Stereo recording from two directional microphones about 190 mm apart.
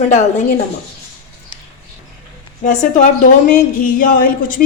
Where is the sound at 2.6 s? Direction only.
40° left (ahead or behind).